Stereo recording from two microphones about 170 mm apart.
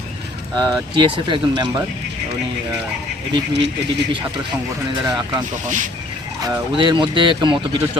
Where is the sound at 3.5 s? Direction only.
90° right.